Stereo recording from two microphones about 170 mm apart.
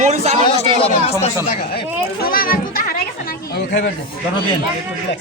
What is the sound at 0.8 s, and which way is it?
Speech, 35° left (ahead or behind).